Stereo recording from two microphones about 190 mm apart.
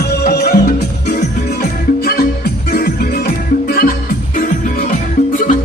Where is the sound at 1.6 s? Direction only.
55° left (ahead or behind).